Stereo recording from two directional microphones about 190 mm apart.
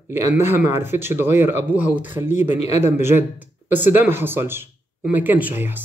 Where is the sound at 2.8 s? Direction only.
10° right (ahead or behind).